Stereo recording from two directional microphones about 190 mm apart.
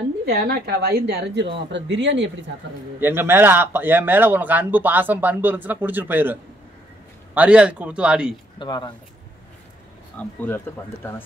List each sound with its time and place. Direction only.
0.2 s speech: 50° right (ahead or behind); by 2.3 s 70° right (ahead or behind)
3.0 s speech: 10° right (ahead or behind)
7.3 s a man's voice: 5° right (ahead or behind)
8.5 s speech: 25° left (ahead or behind)
10.1 s speech: 10° left (ahead or behind)